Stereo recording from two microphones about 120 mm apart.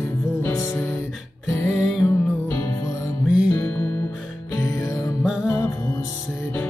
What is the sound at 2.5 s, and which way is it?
Music, 25° left (ahead or behind).